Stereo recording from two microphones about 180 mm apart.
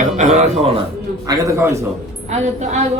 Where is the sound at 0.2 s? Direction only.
40° right (ahead or behind).